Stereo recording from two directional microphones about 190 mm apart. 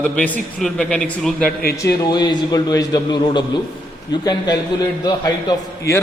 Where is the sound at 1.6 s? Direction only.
55° left (ahead or behind).